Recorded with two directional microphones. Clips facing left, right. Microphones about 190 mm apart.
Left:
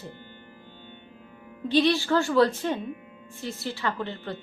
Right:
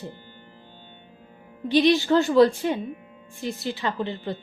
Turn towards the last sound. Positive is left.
turn(degrees=-15)  # may be behind; listen again after turning